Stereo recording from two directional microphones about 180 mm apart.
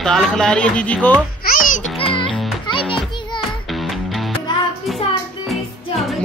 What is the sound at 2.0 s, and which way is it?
Music, 30° left (ahead or behind).